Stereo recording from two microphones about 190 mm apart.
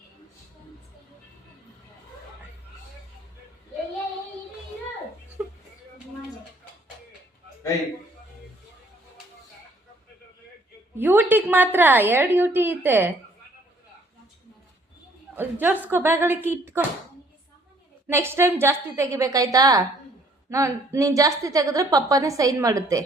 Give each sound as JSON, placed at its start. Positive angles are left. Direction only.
{"t": 10.9, "sound": "a woman's voice", "side_deg": -10}
{"t": 15.4, "sound": "a woman's voice", "side_deg": -10}
{"t": 18.1, "sound": "a woman's voice", "side_deg": -15}